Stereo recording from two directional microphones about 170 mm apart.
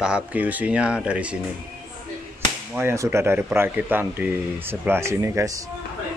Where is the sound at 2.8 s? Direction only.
15° right (ahead or behind).